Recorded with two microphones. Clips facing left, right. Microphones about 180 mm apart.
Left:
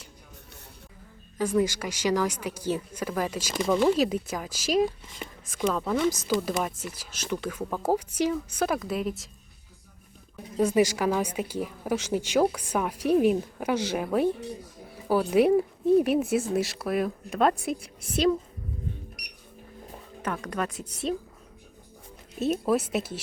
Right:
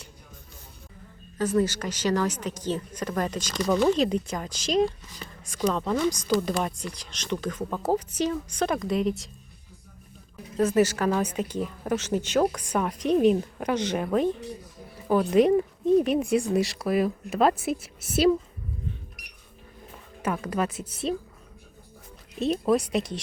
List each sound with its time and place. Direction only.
1.4 s a woman's voice: 10° left (ahead or behind)
5.0 s speech: 25° left (ahead or behind)
5.5 s speech: 5° left (ahead or behind)
10.6 s a woman's voice: 10° left (ahead or behind); by 18.3 s 5° right (ahead or behind)
20.2 s speech: 5° right (ahead or behind)
22.4 s speech: 5° left (ahead or behind)